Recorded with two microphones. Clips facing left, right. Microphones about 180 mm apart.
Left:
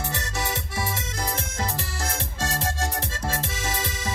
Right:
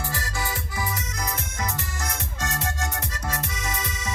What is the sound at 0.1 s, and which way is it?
Music, 25° left (ahead or behind).